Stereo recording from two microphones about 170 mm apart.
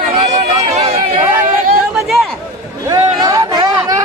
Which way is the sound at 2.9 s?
20° right (ahead or behind).